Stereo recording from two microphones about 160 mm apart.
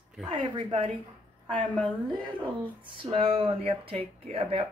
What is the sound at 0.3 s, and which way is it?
Speech, 30° right (ahead or behind).